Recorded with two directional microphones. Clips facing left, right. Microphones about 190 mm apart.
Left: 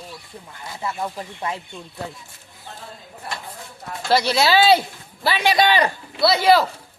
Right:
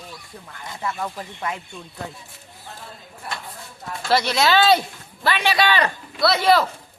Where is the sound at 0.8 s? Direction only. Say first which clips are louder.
Left 1 dB; 15° left (ahead or behind).